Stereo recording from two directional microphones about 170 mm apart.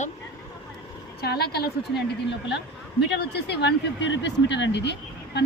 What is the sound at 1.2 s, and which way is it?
A woman's voice, 70° left (ahead or behind).